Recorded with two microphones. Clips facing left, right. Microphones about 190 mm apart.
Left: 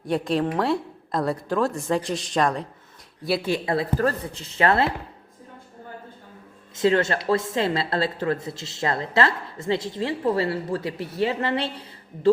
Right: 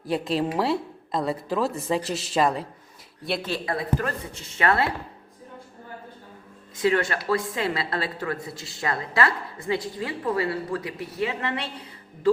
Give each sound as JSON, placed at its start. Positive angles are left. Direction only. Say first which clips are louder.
{"t": 0.0, "sound": "a woman's voice", "louder": "left 2 dB", "side_deg": 0}
{"t": 3.5, "sound": "a woman's voice", "louder": "left 3 dB", "side_deg": 30}
{"t": 6.7, "sound": "a woman's voice", "louder": "left 3 dB", "side_deg": 25}